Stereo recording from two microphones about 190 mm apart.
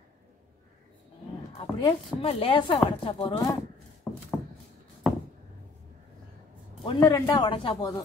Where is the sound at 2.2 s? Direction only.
30° left (ahead or behind).